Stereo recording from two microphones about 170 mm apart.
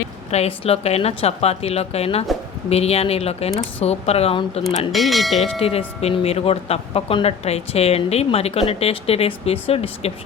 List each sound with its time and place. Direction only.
0.3 s speech: 35° left (ahead or behind)
4.9 s speech: centre (ahead or behind)
5.5 s speech: 35° left (ahead or behind)